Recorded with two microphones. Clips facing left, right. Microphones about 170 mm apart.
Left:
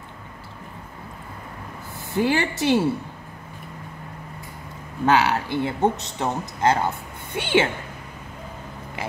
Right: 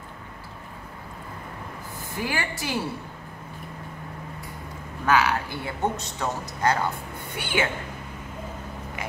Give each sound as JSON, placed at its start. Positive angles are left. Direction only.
{"t": 2.1, "sound": "speech", "side_deg": 25}
{"t": 5.0, "sound": "speech", "side_deg": 25}